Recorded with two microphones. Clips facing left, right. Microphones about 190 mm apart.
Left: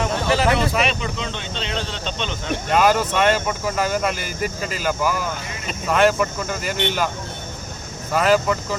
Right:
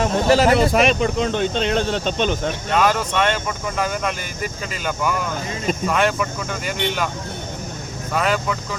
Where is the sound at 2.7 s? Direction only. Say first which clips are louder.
Left 2 dB; 5° left (ahead or behind).